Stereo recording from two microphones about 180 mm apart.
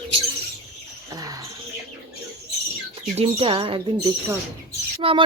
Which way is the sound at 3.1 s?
35° right (ahead or behind).